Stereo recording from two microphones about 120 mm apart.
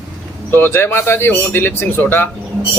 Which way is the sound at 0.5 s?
20° left (ahead or behind).